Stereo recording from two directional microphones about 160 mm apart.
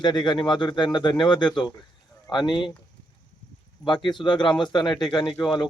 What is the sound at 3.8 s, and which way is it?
Speech, 30° left (ahead or behind).